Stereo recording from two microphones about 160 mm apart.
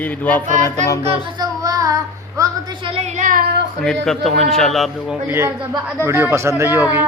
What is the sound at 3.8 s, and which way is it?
Speech, 5° left (ahead or behind).